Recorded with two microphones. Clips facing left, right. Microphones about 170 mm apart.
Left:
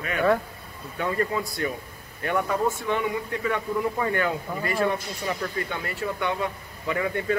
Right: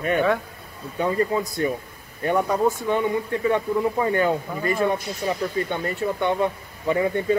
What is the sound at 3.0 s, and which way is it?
Speech, 25° right (ahead or behind).